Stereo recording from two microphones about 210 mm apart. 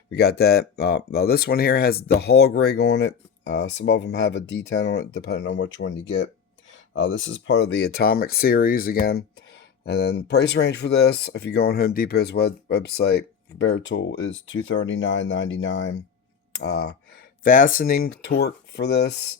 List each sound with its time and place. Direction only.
0.1 s speech: 50° left (ahead or behind)
17.4 s speech: 40° left (ahead or behind)